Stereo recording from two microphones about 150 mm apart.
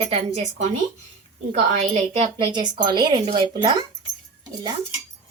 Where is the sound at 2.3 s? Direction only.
30° right (ahead or behind).